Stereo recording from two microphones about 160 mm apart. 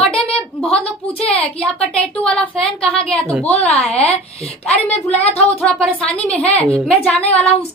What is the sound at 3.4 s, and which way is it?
A woman's voice, 40° left (ahead or behind).